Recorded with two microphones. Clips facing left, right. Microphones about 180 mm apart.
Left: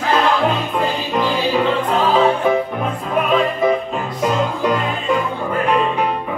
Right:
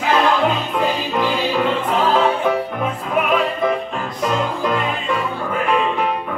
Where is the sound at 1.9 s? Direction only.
Centre (ahead or behind).